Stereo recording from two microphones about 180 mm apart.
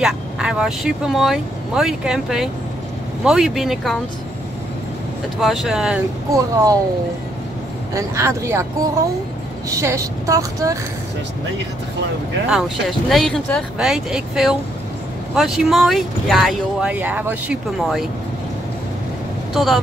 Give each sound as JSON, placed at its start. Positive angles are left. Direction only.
{"t": 0.0, "sound": "speech", "side_deg": -5}
{"t": 5.4, "sound": "speech", "side_deg": 0}
{"t": 6.3, "sound": "a child's voice", "side_deg": -20}
{"t": 7.9, "sound": "a woman's voice", "side_deg": -15}
{"t": 9.7, "sound": "a woman's voice", "side_deg": -15}
{"t": 12.4, "sound": "speech", "side_deg": -5}
{"t": 19.5, "sound": "speech", "side_deg": 0}